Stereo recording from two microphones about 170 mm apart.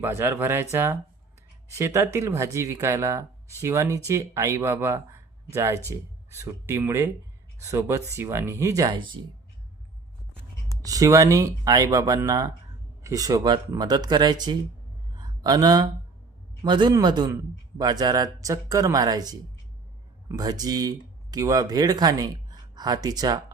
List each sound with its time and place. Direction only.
0.0 s speech: 15° right (ahead or behind)
10.8 s speech: 20° right (ahead or behind)
15.1 s a sound: 25° right (ahead or behind)
16.6 s speech: 25° right (ahead or behind)